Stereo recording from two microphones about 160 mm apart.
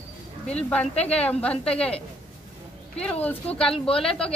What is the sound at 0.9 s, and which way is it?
Speech, 40° left (ahead or behind).